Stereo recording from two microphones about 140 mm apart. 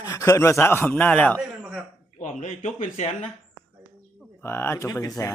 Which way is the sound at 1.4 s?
10° right (ahead or behind).